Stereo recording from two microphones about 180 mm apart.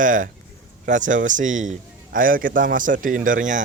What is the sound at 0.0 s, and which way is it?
Speech, 45° right (ahead or behind).